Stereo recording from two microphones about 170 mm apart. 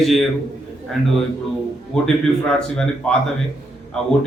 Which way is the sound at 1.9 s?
5° left (ahead or behind).